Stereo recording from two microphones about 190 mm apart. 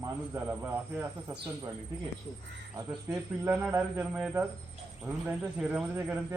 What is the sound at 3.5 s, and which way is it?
Speech, 5° right (ahead or behind).